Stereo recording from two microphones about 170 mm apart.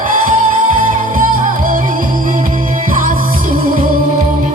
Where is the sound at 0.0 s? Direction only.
50° right (ahead or behind).